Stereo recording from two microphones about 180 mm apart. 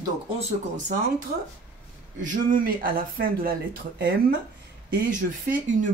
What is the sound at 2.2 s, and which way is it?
Speech, 45° right (ahead or behind).